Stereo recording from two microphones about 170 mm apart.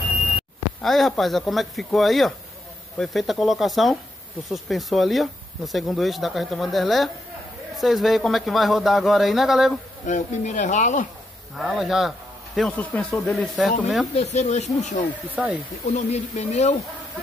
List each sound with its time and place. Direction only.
0.8 s speech: centre (ahead or behind)
10.0 s speech: 45° left (ahead or behind)
11.5 s speech: centre (ahead or behind)
14.1 s speech: 40° left (ahead or behind)
15.4 s speech: 5° right (ahead or behind)
15.9 s speech: 40° left (ahead or behind)